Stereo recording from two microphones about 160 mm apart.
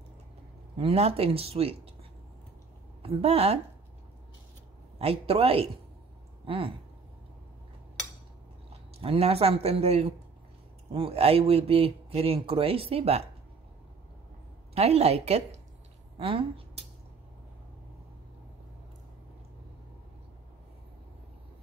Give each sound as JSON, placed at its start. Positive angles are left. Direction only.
{"t": 0.7, "sound": "speech", "side_deg": -40}
{"t": 3.0, "sound": "a woman's voice", "side_deg": -35}
{"t": 4.9, "sound": "speech", "side_deg": -40}
{"t": 8.9, "sound": "speech", "side_deg": -40}
{"t": 14.7, "sound": "a woman's voice", "side_deg": -40}